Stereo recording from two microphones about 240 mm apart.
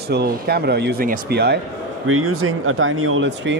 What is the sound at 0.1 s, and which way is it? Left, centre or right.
Speech, right.